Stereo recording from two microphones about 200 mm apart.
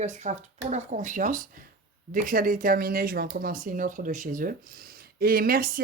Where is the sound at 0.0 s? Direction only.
35° right (ahead or behind).